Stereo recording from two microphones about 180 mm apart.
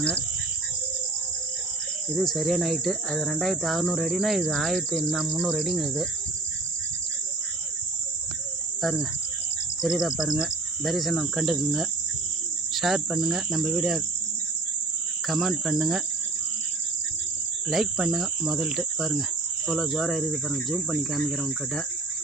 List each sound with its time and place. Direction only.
2.1 s speech: centre (ahead or behind)
8.8 s cricket: centre (ahead or behind)
9.8 s speech: 5° right (ahead or behind)
15.3 s speech: centre (ahead or behind)
17.7 s speech: centre (ahead or behind)